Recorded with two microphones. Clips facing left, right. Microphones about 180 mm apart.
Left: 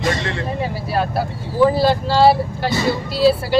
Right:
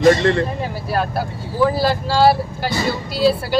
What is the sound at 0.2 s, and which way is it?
Speech, 55° right (ahead or behind).